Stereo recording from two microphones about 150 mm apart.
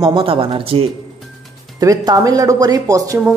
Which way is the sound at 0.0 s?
35° right (ahead or behind).